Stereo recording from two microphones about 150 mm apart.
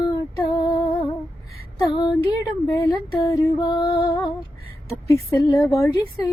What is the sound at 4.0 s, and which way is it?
Female singing, 35° left (ahead or behind).